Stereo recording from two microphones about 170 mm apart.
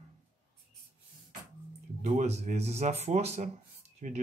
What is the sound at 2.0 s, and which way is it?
Speech, 40° right (ahead or behind).